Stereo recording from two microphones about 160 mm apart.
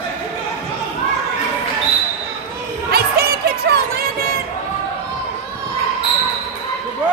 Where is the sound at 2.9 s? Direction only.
75° right (ahead or behind).